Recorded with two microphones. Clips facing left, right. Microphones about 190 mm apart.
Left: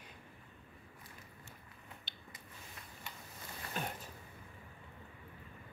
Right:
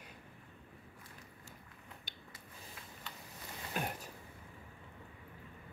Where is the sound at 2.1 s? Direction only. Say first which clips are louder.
Right 1 dB; 10° right (ahead or behind).